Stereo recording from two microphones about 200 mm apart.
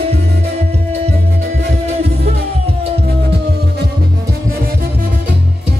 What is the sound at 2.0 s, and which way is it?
Music, 30° right (ahead or behind).